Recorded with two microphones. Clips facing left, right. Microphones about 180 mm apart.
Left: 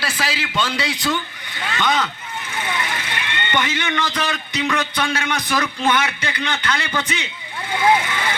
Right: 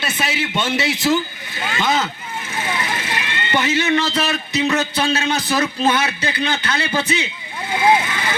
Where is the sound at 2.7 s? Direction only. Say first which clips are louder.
Right 2 dB; 25° right (ahead or behind).